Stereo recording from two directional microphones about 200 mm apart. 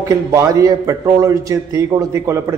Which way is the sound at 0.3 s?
15° right (ahead or behind).